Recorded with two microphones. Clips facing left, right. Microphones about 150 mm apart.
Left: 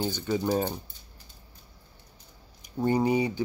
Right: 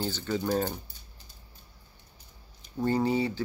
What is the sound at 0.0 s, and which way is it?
Speech, 10° left (ahead or behind).